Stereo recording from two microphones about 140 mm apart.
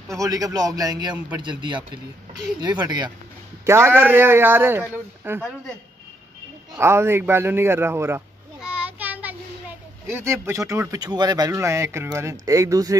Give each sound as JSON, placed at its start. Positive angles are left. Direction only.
{"t": 0.1, "sound": "a man's voice", "side_deg": -25}
{"t": 3.6, "sound": "a man's voice", "side_deg": -20}
{"t": 6.8, "sound": "a man's voice", "side_deg": -20}
{"t": 8.5, "sound": "child singing", "side_deg": -10}
{"t": 10.0, "sound": "speech", "side_deg": -20}